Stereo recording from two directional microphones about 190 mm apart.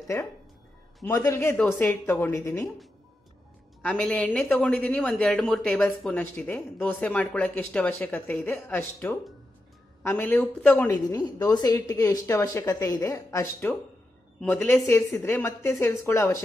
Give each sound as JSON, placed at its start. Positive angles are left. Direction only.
{"t": 1.0, "sound": "speech", "side_deg": 15}
{"t": 3.8, "sound": "speech", "side_deg": 5}